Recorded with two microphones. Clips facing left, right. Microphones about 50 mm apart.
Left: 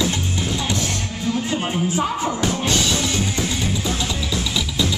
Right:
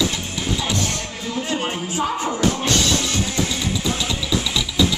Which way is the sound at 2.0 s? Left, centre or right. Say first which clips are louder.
Even; centre.